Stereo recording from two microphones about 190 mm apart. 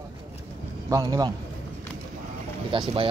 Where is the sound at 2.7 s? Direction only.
30° right (ahead or behind).